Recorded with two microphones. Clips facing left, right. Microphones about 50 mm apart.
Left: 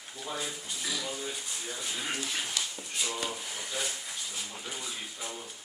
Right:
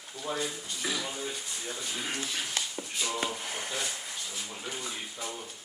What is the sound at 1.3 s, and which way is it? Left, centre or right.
Speech, centre.